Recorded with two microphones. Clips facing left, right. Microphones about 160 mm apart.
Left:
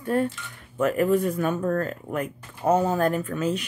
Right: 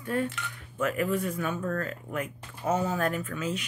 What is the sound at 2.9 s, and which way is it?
Speech, 35° left (ahead or behind).